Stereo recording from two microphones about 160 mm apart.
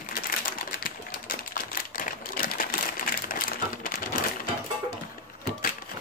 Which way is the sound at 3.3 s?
60° left (ahead or behind).